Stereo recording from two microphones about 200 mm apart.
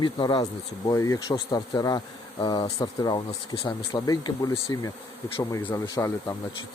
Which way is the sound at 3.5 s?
15° left (ahead or behind).